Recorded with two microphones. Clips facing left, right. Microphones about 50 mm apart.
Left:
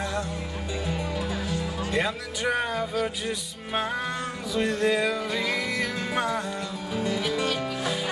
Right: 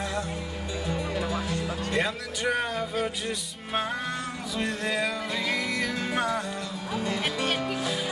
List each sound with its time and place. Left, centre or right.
1.1 s fowl: centre
1.9 s speech: centre
4.6 s music: centre
7.0 s speech: centre
7.4 s speech: right